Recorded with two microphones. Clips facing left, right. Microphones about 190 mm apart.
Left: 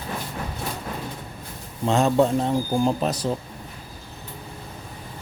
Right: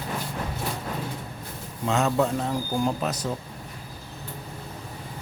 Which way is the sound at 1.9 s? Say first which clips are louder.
Left 4 dB; 30° left (ahead or behind).